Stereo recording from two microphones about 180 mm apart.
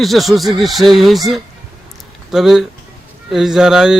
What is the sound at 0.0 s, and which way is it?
A man's voice, centre (ahead or behind).